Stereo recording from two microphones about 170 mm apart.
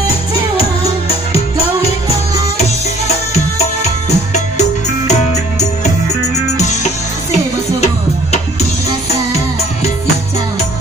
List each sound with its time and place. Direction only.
1.0 s music: 35° left (ahead or behind)
3.5 s music: 40° left (ahead or behind)
6.4 s music: 45° left (ahead or behind)